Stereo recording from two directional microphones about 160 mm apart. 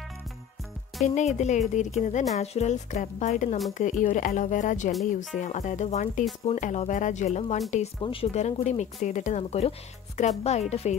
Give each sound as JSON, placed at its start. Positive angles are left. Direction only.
{"t": 1.0, "sound": "speech", "side_deg": 45}